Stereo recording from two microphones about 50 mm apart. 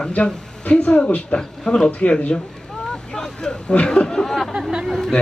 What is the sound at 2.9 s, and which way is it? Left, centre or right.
Speech, centre.